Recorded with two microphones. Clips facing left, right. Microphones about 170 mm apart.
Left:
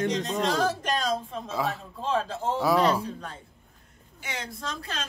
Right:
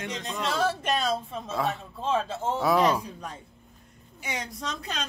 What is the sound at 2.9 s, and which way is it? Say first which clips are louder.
Speech: left 1 dB; 10° right (ahead or behind).